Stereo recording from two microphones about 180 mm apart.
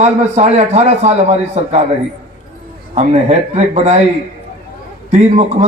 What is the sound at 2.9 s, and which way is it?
A man's voice, 40° right (ahead or behind).